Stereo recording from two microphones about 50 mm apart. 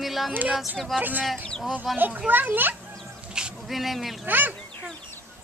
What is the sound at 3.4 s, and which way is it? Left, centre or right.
Dog, centre.